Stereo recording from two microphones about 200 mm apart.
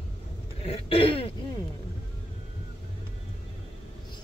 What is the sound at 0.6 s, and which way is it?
Throat clearing, 30° left (ahead or behind).